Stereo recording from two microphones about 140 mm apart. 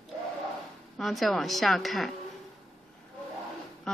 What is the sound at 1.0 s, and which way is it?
A woman's voice, centre (ahead or behind).